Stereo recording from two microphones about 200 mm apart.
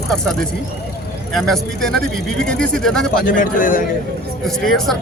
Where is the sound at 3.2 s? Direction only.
45° left (ahead or behind).